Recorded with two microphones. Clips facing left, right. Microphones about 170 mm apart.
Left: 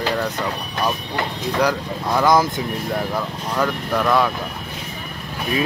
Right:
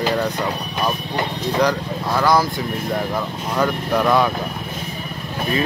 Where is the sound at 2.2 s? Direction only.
20° left (ahead or behind).